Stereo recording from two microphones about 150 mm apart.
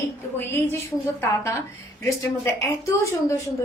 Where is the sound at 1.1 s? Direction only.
15° left (ahead or behind).